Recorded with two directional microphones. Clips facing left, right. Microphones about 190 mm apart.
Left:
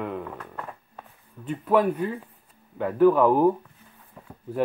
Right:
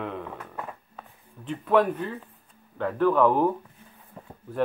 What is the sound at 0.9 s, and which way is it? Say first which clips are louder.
Speech: left 1 dB; 5° left (ahead or behind).